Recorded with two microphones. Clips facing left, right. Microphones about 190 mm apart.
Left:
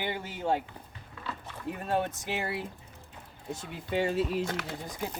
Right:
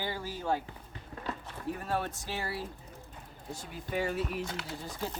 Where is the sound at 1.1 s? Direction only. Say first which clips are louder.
Right 2 dB; 40° right (ahead or behind).